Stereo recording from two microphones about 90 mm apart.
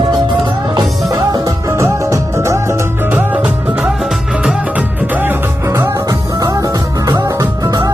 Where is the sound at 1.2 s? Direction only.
50° right (ahead or behind).